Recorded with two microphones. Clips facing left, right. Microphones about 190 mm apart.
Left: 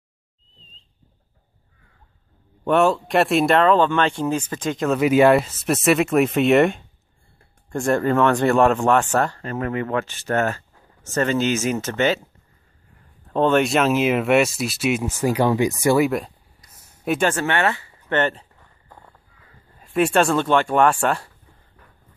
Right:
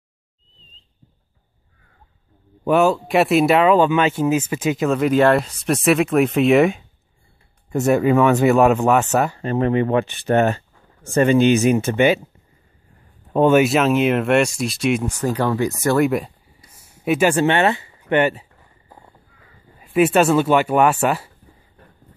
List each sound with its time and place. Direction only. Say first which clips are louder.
2.6 s speech: right 2 dB; centre (ahead or behind)
9.4 s speech: right 7 dB; 25° right (ahead or behind)
13.3 s speech: right 4 dB; 10° right (ahead or behind); by 16.0 s 15° left (ahead or behind)
16.0 s speech: right 2 dB; centre (ahead or behind)
16.7 s a sound: right 3 dB; 10° right (ahead or behind)
17.3 s a sound: right 5 dB; 20° right (ahead or behind)
19.8 s speech: right 3 dB; 5° right (ahead or behind)